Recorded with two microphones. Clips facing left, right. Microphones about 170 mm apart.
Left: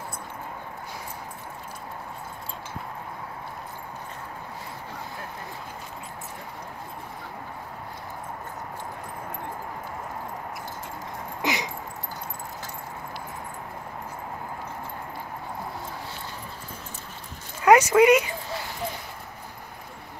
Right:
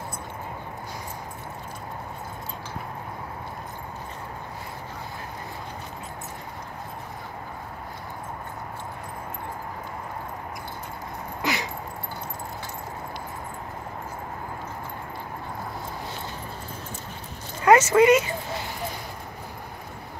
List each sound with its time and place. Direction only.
11.4 s dog: 20° left (ahead or behind)
17.6 s speech: 10° left (ahead or behind)